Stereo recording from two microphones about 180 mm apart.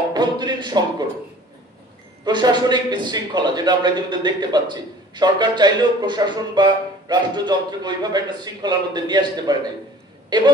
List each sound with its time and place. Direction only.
0.1 s speech: 25° right (ahead or behind)
2.2 s a man's voice: 25° right (ahead or behind)